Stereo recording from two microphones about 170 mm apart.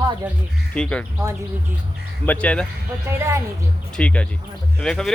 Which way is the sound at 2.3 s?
5° left (ahead or behind).